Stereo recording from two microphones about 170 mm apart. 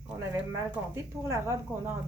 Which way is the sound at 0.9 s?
15° right (ahead or behind).